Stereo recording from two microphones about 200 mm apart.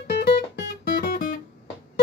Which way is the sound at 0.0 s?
55° left (ahead or behind).